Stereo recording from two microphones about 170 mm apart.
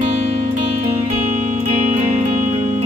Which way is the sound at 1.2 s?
50° right (ahead or behind).